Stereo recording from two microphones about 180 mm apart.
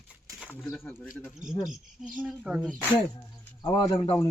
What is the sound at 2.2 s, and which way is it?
Speech, centre (ahead or behind).